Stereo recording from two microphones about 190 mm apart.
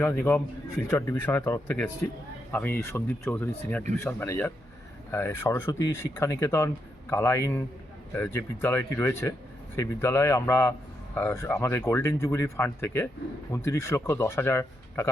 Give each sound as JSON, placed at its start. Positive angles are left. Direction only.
{"t": 0.0, "sound": "a man's voice", "side_deg": 10}